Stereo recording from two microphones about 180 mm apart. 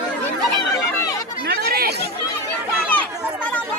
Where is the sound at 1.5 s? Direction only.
60° right (ahead or behind).